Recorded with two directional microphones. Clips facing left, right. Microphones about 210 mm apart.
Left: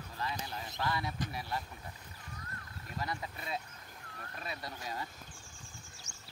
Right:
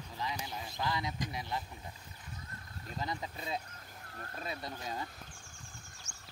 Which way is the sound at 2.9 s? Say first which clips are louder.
Right 1 dB; 20° right (ahead or behind).